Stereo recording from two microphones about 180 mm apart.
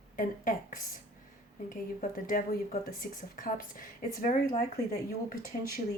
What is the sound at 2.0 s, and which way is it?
Speech, 45° left (ahead or behind).